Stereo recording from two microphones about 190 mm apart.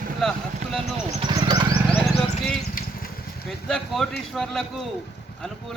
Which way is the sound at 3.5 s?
5° left (ahead or behind).